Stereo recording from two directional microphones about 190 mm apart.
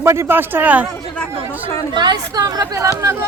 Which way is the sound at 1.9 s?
20° right (ahead or behind).